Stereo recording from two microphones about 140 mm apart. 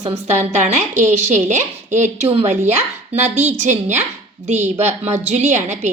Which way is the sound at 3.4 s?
55° right (ahead or behind).